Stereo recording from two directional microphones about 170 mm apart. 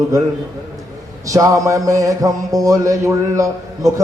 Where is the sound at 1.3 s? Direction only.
20° right (ahead or behind).